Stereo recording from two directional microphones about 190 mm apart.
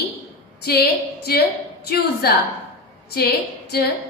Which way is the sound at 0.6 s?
55° left (ahead or behind).